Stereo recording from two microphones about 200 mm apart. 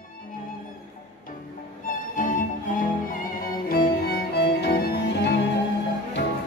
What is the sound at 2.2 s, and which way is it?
Music, 40° left (ahead or behind).